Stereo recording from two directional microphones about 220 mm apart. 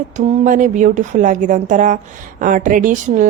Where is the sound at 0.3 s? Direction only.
30° right (ahead or behind).